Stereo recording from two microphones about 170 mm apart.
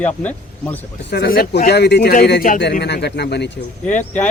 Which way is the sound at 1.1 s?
70° left (ahead or behind).